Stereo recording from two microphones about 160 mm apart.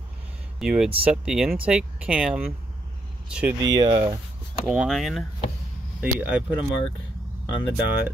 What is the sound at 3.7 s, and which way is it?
Speech, 25° right (ahead or behind).